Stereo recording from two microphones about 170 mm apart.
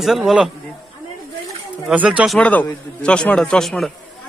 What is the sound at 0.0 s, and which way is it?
Speech, centre (ahead or behind).